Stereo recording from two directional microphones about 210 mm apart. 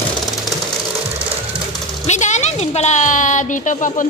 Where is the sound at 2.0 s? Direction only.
35° left (ahead or behind).